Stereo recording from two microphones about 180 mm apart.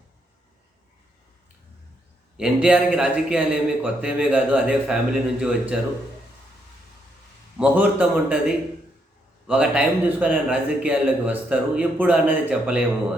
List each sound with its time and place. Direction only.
2.4 s a man's voice: 5° right (ahead or behind)
7.6 s a man's voice: 10° right (ahead or behind)